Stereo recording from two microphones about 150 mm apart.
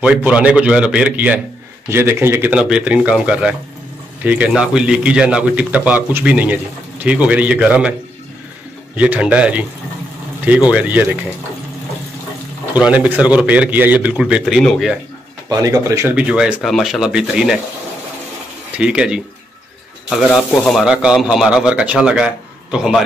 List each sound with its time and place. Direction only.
0.0 s speech: 10° right (ahead or behind)
8.9 s speech: 10° right (ahead or behind)
10.7 s speech: 10° right (ahead or behind)
12.7 s speech: 10° right (ahead or behind)
15.4 s speech: 20° right (ahead or behind)
16.2 s speech: 10° right (ahead or behind)
18.8 s speech: 5° right (ahead or behind)
20.3 s speech: centre (ahead or behind)